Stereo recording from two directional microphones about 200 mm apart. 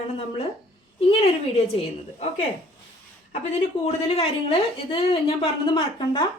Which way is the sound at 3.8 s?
30° left (ahead or behind).